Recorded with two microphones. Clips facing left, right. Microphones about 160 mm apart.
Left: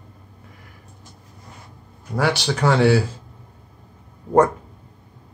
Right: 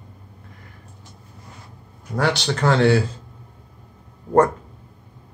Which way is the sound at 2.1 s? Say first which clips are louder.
Even; 5° left (ahead or behind).